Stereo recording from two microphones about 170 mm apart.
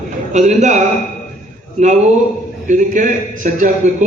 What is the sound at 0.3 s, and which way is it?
Speech, 45° right (ahead or behind).